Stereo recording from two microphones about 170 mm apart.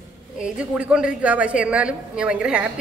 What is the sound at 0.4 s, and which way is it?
A woman's voice, 5° right (ahead or behind).